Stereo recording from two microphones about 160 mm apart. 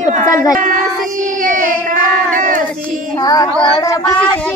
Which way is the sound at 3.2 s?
25° left (ahead or behind).